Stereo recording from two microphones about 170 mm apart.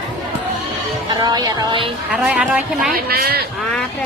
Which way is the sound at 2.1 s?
5° right (ahead or behind).